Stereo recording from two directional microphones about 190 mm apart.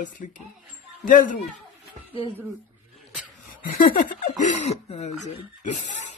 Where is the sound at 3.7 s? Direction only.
45° left (ahead or behind).